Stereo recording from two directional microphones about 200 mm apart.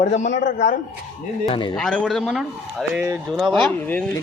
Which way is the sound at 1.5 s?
20° left (ahead or behind).